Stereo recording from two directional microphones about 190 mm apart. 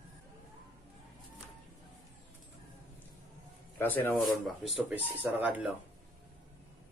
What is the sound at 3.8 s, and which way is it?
Speech, 10° left (ahead or behind).